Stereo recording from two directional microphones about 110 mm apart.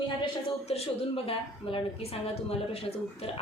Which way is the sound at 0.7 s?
65° left (ahead or behind).